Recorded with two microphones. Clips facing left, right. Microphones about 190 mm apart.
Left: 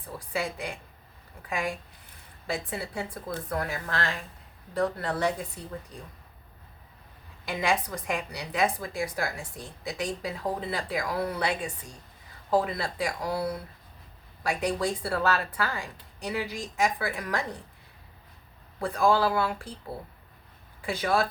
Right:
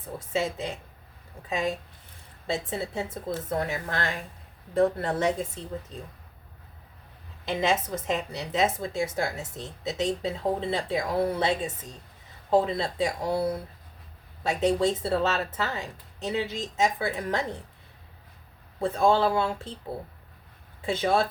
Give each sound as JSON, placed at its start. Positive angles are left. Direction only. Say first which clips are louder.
{"t": 0.0, "sound": "speech", "louder": "right 3 dB", "side_deg": -20}
{"t": 7.4, "sound": "a woman's voice", "louder": "right 2 dB", "side_deg": -25}
{"t": 18.8, "sound": "speech", "louder": "right 2 dB", "side_deg": -25}
{"t": 20.8, "sound": "speech", "louder": "right 2 dB", "side_deg": -25}